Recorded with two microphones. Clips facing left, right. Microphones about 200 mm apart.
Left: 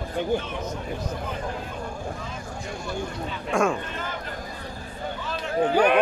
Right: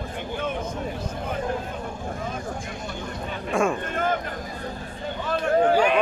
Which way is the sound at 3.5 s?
Centre (ahead or behind).